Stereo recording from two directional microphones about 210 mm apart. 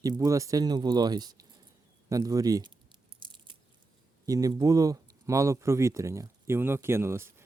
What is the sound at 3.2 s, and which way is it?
Biting, 25° right (ahead or behind).